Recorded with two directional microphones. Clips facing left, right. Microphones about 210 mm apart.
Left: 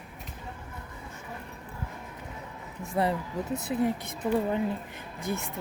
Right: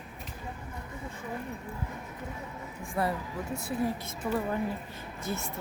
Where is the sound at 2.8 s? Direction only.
20° left (ahead or behind).